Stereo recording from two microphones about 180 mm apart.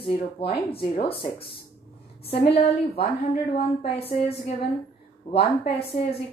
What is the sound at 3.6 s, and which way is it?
Speech, 30° left (ahead or behind).